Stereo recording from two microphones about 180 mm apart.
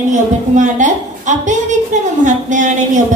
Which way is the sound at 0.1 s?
45° right (ahead or behind).